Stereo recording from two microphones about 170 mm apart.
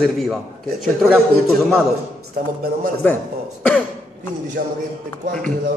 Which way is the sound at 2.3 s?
55° right (ahead or behind).